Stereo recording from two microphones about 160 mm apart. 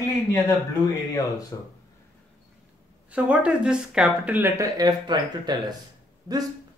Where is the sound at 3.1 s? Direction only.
10° right (ahead or behind); by 5.2 s 25° right (ahead or behind).